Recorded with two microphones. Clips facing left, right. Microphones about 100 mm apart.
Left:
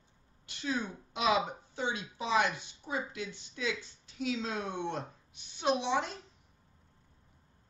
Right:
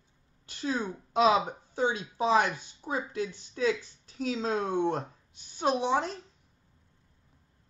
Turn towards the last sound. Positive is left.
turn(degrees=-40)  # may be behind; listen again after turning